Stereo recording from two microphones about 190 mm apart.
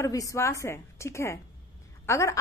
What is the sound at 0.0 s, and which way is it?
A woman's voice, 15° left (ahead or behind).